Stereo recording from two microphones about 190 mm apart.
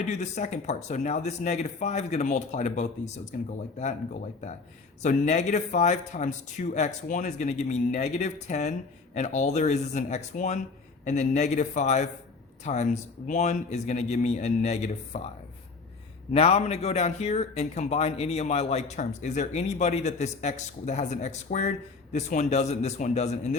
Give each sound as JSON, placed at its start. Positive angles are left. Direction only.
{"t": 0.1, "sound": "speech", "side_deg": 40}
{"t": 5.0, "sound": "speech", "side_deg": 40}
{"t": 16.3, "sound": "speech", "side_deg": 35}